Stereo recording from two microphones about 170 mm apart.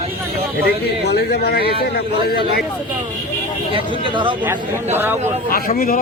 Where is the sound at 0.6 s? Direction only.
70° left (ahead or behind).